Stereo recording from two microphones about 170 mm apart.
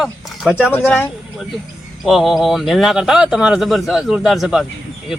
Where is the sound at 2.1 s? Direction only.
Centre (ahead or behind).